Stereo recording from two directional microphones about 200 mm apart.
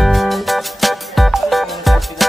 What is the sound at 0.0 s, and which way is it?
Music, centre (ahead or behind).